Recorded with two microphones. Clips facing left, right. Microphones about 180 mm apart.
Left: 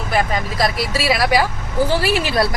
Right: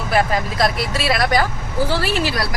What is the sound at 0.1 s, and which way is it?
Speech, centre (ahead or behind).